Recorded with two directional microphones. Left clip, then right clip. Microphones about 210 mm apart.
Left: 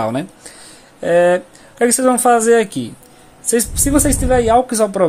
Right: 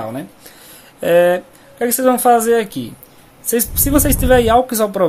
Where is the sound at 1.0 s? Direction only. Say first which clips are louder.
Even; centre (ahead or behind).